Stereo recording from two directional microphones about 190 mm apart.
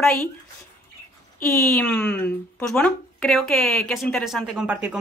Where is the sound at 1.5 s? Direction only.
10° left (ahead or behind).